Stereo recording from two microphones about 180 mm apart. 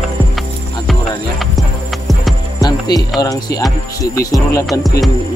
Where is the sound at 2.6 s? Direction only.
20° left (ahead or behind).